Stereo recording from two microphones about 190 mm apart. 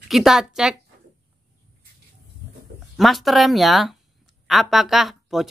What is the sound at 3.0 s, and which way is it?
Speech, centre (ahead or behind).